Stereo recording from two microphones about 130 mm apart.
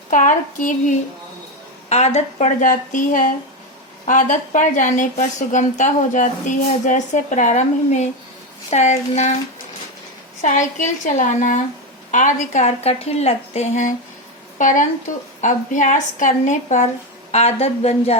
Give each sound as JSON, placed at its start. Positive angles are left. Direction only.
{"t": 0.1, "sound": "speech", "side_deg": 80}
{"t": 1.9, "sound": "a woman's voice", "side_deg": 55}
{"t": 10.4, "sound": "a woman's voice", "side_deg": 70}
{"t": 17.3, "sound": "speech", "side_deg": 55}